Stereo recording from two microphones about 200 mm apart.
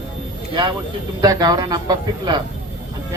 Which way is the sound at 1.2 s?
20° right (ahead or behind).